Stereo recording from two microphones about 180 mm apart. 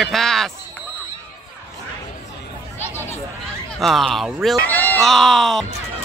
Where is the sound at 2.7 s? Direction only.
10° left (ahead or behind).